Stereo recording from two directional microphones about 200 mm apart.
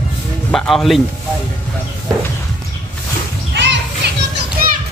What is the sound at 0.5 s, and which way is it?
Speech, centre (ahead or behind).